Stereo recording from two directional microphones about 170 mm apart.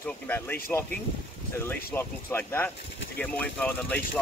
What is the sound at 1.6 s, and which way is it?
Speech, 10° left (ahead or behind).